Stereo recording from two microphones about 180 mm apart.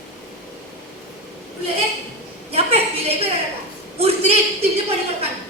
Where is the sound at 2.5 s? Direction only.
35° right (ahead or behind).